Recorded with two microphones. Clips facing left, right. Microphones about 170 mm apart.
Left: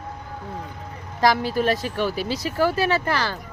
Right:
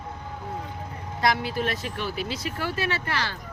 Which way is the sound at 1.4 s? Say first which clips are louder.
Left 6 dB; 40° left (ahead or behind).